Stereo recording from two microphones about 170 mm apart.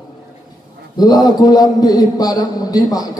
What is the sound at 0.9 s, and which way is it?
A man's voice, 25° left (ahead or behind).